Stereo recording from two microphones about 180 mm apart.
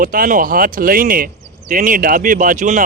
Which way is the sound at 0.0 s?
50° right (ahead or behind).